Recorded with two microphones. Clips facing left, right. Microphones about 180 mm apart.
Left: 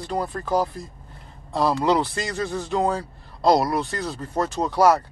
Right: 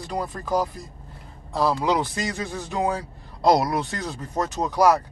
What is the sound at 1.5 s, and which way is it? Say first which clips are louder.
Speech: left 2 dB; 10° right (ahead or behind).